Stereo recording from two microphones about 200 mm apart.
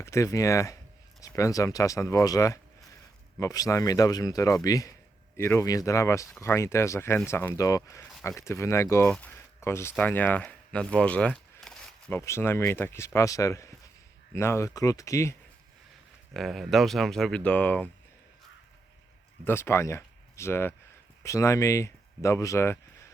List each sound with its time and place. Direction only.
0.0 s speech: 15° left (ahead or behind)
16.3 s speech: centre (ahead or behind)
19.5 s speech: 10° left (ahead or behind)